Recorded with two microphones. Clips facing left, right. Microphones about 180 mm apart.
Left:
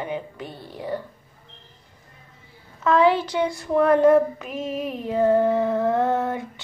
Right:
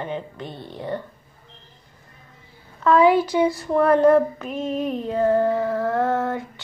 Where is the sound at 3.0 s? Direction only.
10° right (ahead or behind).